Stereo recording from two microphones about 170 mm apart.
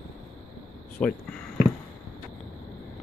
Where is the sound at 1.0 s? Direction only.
5° left (ahead or behind).